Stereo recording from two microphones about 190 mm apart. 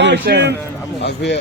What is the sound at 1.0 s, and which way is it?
Speech, 65° left (ahead or behind).